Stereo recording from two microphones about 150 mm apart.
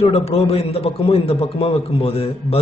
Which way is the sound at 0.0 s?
40° left (ahead or behind).